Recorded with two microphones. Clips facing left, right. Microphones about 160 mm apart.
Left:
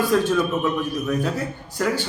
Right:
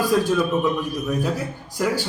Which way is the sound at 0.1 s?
10° right (ahead or behind).